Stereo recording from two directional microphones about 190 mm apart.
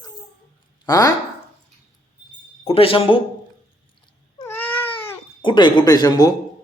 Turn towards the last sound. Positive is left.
turn(degrees=20)  # may be behind; listen again after turning